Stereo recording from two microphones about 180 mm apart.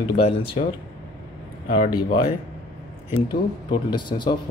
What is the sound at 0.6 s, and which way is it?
Speech, 40° left (ahead or behind).